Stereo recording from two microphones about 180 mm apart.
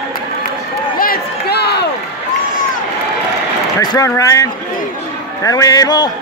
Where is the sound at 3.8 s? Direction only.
20° left (ahead or behind).